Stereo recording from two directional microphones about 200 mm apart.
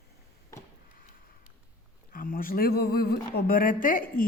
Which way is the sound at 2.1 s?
45° left (ahead or behind).